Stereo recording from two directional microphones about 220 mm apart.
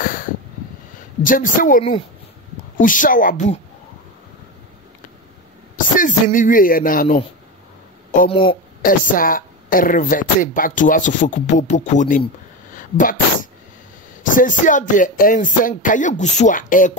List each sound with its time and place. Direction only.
0.0 s a sound: 40° left (ahead or behind)
1.2 s a woman's voice: 40° left (ahead or behind)
5.8 s speech: 35° left (ahead or behind)
8.8 s a woman's voice: 40° left (ahead or behind)
12.7 s a sound: 35° left (ahead or behind)
14.3 s a woman's voice: 35° left (ahead or behind)